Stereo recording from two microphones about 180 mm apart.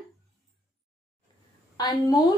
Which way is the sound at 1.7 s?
20° left (ahead or behind).